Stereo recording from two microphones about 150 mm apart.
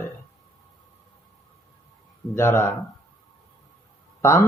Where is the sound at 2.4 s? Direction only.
15° left (ahead or behind).